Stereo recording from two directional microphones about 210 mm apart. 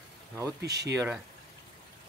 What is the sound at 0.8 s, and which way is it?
Speech, 10° right (ahead or behind).